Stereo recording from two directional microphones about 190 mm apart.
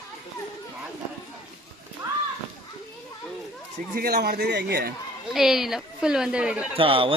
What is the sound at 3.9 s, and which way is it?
A man's voice, 55° right (ahead or behind).